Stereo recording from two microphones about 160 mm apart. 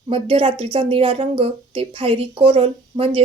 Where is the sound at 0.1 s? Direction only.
35° right (ahead or behind).